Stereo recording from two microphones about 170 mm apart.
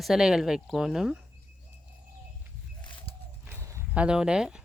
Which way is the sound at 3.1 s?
35° left (ahead or behind).